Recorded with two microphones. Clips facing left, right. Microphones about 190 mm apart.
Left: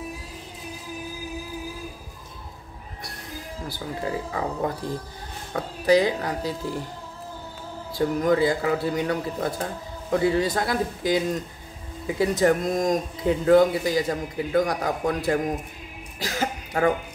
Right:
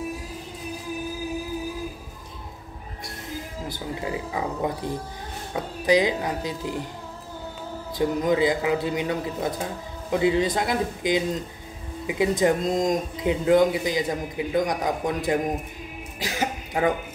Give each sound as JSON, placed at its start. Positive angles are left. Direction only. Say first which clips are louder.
{"t": 3.6, "sound": "speech", "louder": "left 2 dB", "side_deg": -20}
{"t": 8.0, "sound": "speech", "louder": "left 1 dB", "side_deg": -20}
{"t": 16.2, "sound": "throat clearing", "louder": "even", "side_deg": -15}